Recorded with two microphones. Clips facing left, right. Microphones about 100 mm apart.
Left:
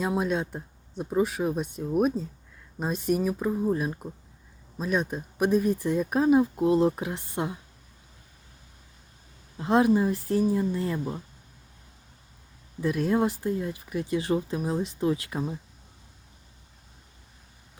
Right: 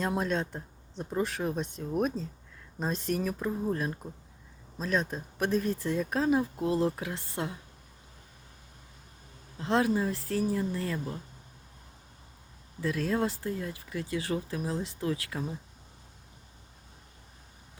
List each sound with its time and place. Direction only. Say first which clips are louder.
0.0 s speech: left 3 dB; 10° left (ahead or behind)
9.6 s speech: left 5 dB; 20° left (ahead or behind)
12.8 s speech: left 5 dB; 20° left (ahead or behind)